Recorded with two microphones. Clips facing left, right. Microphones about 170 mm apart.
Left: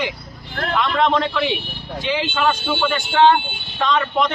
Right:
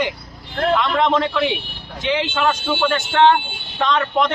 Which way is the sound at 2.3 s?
Centre (ahead or behind).